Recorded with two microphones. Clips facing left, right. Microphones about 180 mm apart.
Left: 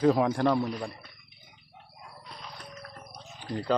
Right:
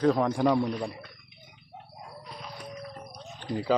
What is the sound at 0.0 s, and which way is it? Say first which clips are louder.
Speech: even; 5° left (ahead or behind).